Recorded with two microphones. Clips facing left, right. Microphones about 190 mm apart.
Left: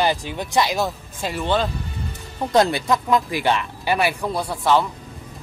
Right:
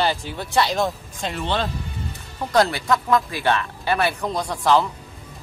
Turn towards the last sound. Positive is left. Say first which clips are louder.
# even
turn(degrees=5)  # may be behind; listen again after turning